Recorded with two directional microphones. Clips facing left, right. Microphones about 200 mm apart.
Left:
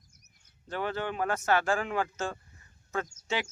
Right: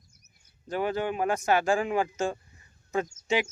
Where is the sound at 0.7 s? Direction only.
15° right (ahead or behind).